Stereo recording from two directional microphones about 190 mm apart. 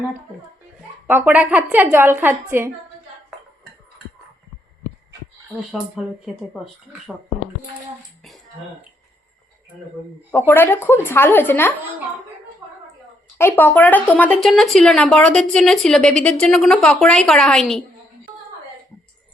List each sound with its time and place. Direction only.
1.0 s a woman's voice: 10° right (ahead or behind)
5.7 s speech: centre (ahead or behind)
10.3 s speech: 10° left (ahead or behind)
13.4 s speech: 10° left (ahead or behind)